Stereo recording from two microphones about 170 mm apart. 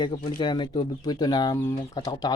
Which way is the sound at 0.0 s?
30° left (ahead or behind).